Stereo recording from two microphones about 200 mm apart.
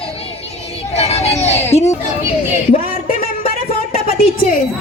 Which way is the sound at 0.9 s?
30° left (ahead or behind).